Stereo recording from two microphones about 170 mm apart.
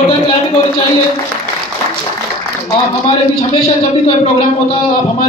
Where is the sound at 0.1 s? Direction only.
30° left (ahead or behind).